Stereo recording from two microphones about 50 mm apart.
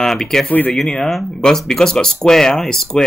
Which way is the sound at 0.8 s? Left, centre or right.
Centre.